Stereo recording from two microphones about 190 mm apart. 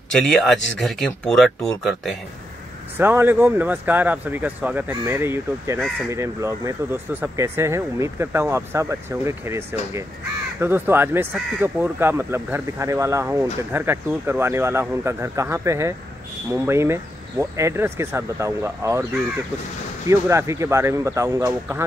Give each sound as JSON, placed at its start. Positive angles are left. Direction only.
{"t": 0.1, "sound": "speech", "side_deg": 5}
{"t": 3.0, "sound": "speech", "side_deg": -10}
{"t": 20.1, "sound": "speech", "side_deg": -15}